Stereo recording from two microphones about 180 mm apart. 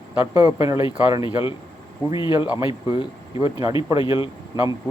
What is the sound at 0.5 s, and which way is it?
Speech, 15° right (ahead or behind).